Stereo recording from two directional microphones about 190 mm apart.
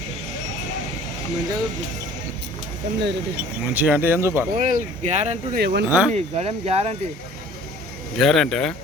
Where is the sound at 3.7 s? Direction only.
10° right (ahead or behind).